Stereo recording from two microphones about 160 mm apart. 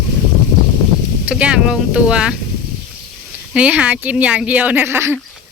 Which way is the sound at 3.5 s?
5° right (ahead or behind).